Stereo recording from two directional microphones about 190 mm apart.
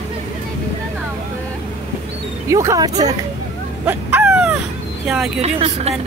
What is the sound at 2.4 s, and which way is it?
Speech, 15° right (ahead or behind).